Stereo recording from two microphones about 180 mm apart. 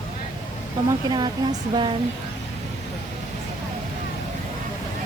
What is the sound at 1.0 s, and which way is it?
Speech, 20° right (ahead or behind).